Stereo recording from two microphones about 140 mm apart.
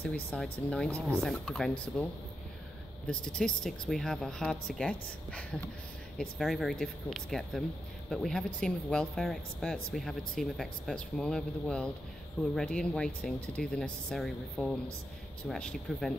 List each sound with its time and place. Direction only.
0.0 s speech: 10° left (ahead or behind)
3.1 s speech: 5° left (ahead or behind)